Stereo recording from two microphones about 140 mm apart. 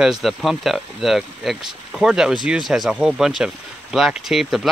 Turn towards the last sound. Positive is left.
turn(degrees=0)  # may be behind; listen again after turning